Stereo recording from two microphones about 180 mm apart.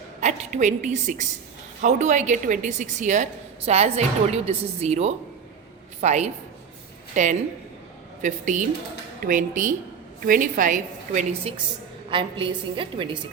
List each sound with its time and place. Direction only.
0.2 s a woman's voice: 40° right (ahead or behind)
12.1 s a woman's voice: 30° right (ahead or behind)